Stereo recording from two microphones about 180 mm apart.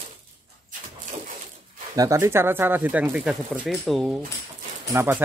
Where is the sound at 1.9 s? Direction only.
20° right (ahead or behind); by 4.2 s centre (ahead or behind).